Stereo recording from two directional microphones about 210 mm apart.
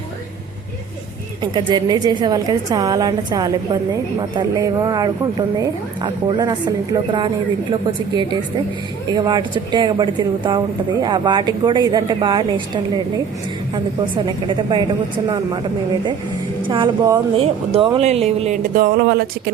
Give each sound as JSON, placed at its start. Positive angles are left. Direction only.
{"t": 1.4, "sound": "speech", "side_deg": -20}
{"t": 14.3, "sound": "speech", "side_deg": -20}
{"t": 16.6, "sound": "speech", "side_deg": -25}